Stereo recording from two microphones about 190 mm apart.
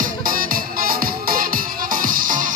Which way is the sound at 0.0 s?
50° right (ahead or behind).